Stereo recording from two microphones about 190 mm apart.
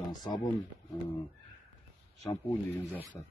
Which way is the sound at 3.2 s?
15° left (ahead or behind).